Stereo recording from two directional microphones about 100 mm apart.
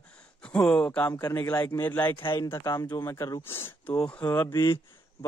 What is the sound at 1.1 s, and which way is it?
Speech, 30° left (ahead or behind).